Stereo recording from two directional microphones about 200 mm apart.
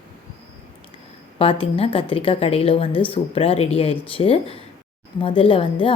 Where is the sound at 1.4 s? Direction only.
30° left (ahead or behind).